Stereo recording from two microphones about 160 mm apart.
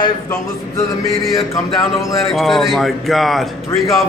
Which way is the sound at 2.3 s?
Centre (ahead or behind).